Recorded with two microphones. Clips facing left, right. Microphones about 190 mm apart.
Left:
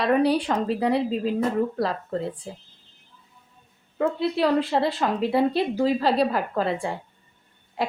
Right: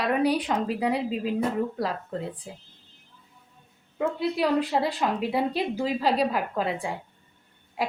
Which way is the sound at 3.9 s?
5° right (ahead or behind).